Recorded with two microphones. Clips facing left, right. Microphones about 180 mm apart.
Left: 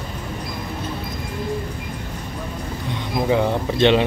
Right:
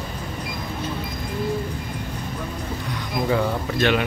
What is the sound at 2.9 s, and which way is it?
Music, 20° left (ahead or behind).